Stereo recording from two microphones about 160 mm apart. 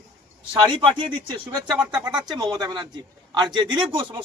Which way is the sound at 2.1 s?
25° right (ahead or behind).